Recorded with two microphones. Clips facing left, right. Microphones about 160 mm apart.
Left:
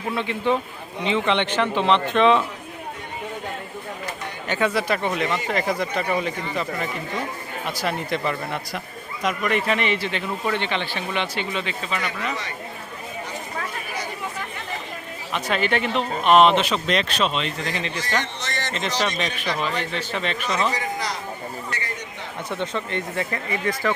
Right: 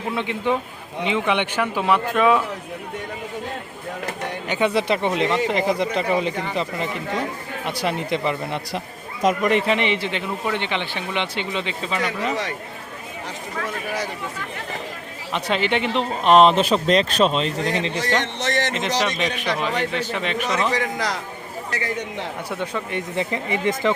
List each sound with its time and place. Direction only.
0.2 s speech: 15° right (ahead or behind)
4.4 s a man's voice: 20° right (ahead or behind)
7.8 s a man's voice: 20° right (ahead or behind)
15.3 s speech: 25° right (ahead or behind)
18.0 s a man's voice: 75° right (ahead or behind)
19.2 s speech: 15° right (ahead or behind)
20.7 s a man's voice: 90° right
22.4 s speech: 10° right (ahead or behind)